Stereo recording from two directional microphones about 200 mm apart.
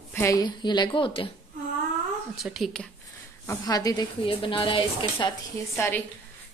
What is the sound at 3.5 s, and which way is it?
Speech, 20° left (ahead or behind).